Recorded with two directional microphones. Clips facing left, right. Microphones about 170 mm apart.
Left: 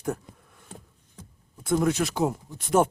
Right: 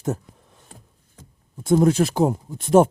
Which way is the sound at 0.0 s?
25° right (ahead or behind).